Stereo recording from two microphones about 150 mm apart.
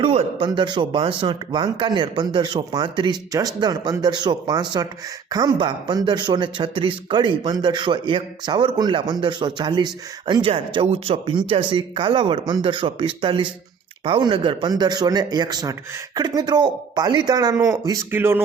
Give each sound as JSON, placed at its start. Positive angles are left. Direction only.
{"t": 0.0, "sound": "speech", "side_deg": -40}